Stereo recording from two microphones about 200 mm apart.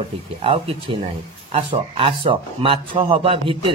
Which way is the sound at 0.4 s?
25° right (ahead or behind).